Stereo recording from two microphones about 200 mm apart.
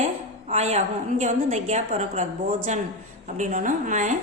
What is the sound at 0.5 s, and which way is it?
A woman's voice, 35° right (ahead or behind).